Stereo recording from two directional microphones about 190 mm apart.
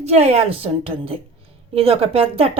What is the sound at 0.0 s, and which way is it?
A woman's voice, 35° right (ahead or behind).